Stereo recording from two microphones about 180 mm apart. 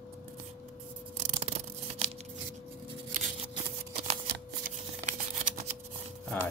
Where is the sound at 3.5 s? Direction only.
35° right (ahead or behind).